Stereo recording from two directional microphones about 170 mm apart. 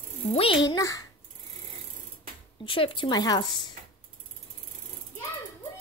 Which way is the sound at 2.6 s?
30° left (ahead or behind).